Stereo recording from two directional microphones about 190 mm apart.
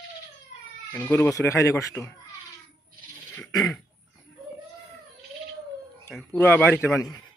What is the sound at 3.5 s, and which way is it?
Throat clearing, 20° left (ahead or behind).